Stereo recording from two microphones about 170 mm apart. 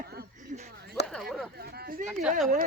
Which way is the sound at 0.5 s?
50° right (ahead or behind).